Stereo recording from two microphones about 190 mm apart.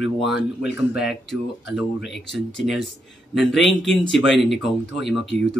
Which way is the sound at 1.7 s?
Centre (ahead or behind).